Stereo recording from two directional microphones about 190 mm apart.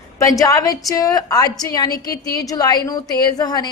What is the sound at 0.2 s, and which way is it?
A woman's voice, 15° left (ahead or behind).